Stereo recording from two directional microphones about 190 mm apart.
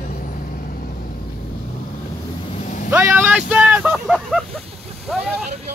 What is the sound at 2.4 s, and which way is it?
Vehicle, 30° left (ahead or behind).